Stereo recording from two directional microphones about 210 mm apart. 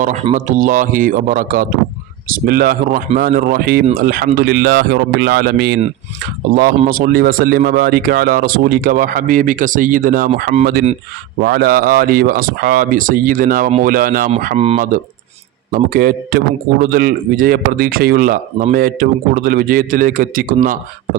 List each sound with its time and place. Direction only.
0.0 s speech: 30° right (ahead or behind)
14.4 s speech: 30° right (ahead or behind)
15.7 s speech: 45° right (ahead or behind)